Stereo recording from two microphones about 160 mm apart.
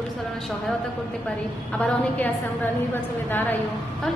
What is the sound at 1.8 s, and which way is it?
A woman's voice, 10° left (ahead or behind).